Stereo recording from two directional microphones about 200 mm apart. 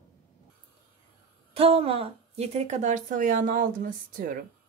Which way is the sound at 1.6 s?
30° right (ahead or behind).